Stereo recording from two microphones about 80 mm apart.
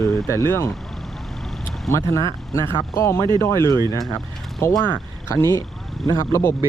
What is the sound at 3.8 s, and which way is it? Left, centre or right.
Speech, right.